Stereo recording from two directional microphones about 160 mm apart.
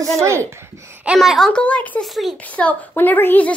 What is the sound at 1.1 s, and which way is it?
A child's voice, centre (ahead or behind).